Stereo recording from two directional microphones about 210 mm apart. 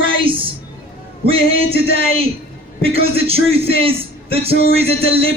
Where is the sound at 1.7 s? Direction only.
50° left (ahead or behind).